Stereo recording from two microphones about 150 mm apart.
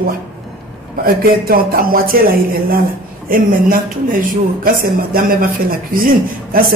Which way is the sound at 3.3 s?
70° right (ahead or behind).